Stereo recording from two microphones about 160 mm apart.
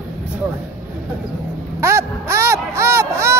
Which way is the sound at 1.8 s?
15° right (ahead or behind).